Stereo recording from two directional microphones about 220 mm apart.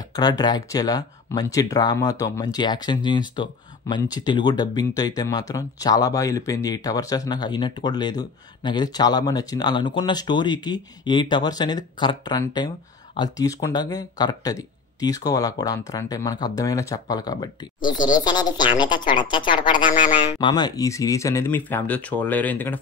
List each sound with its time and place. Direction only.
0.1 s speech: 15° left (ahead or behind)